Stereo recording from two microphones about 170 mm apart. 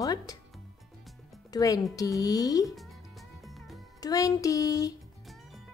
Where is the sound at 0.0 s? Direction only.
20° left (ahead or behind).